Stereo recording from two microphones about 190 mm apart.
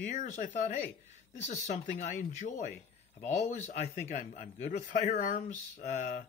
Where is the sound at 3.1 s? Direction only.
35° left (ahead or behind).